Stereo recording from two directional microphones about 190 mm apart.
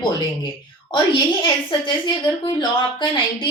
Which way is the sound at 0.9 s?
25° left (ahead or behind).